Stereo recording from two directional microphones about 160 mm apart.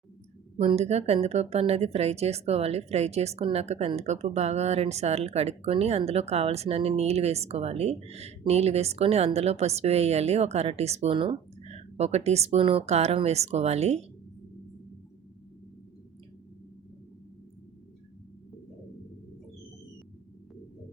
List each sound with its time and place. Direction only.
0.5 s speech: 40° right (ahead or behind)